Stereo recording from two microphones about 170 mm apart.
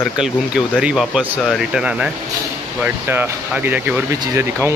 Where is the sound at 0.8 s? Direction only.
5° right (ahead or behind).